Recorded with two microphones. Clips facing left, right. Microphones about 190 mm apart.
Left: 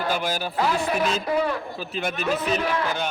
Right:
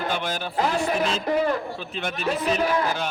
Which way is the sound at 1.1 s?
40° right (ahead or behind).